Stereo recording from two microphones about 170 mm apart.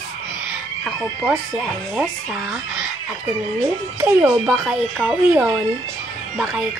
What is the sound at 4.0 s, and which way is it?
Speech, 5° right (ahead or behind).